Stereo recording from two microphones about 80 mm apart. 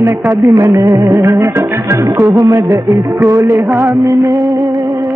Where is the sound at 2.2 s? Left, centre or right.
Right.